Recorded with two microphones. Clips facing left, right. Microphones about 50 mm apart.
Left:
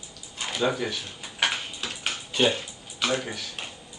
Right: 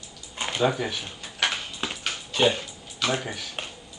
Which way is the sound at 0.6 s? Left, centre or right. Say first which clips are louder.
Right 2 dB; centre.